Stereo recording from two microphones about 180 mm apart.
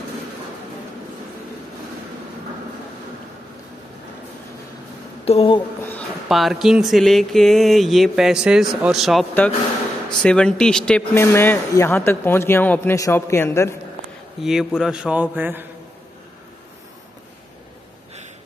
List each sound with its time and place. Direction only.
5.2 s speech: 35° left (ahead or behind)
6.2 s speech: centre (ahead or behind); by 13.7 s 15° left (ahead or behind)
14.4 s a man's voice: centre (ahead or behind)